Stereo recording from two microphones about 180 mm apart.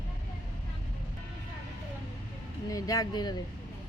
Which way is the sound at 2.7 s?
20° left (ahead or behind).